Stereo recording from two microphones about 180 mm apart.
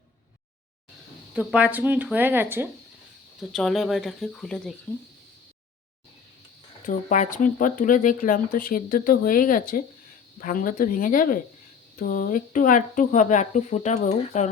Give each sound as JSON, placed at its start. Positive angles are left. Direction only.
{"t": 1.3, "sound": "speech", "side_deg": -5}
{"t": 3.5, "sound": "speech", "side_deg": 0}
{"t": 6.8, "sound": "speech", "side_deg": 45}